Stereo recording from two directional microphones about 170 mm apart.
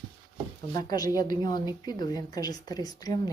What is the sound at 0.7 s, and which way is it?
Speech, 25° left (ahead or behind).